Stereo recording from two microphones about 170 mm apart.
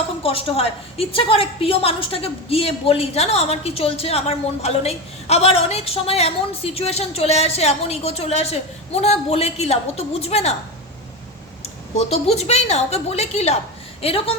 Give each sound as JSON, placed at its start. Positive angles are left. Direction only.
{"t": 0.2, "sound": "a woman's voice", "side_deg": 35}
{"t": 11.6, "sound": "a woman's voice", "side_deg": 40}